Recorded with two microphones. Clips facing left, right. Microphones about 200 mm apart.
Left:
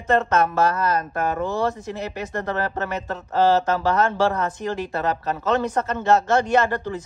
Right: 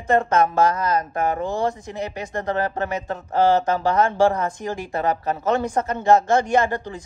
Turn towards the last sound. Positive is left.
turn(degrees=-15)  # may be behind; listen again after turning